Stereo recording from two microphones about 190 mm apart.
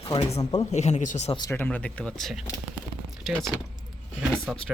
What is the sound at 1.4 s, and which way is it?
Speech, 10° left (ahead or behind).